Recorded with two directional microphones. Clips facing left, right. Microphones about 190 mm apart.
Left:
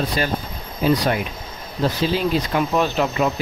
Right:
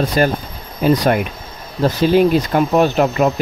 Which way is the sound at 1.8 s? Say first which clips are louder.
Right 8 dB; 55° right (ahead or behind).